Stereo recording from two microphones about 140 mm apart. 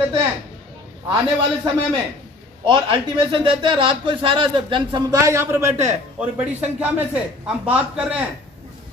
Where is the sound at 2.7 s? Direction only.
35° right (ahead or behind).